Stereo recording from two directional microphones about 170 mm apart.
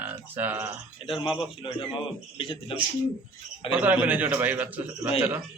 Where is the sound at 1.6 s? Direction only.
30° left (ahead or behind).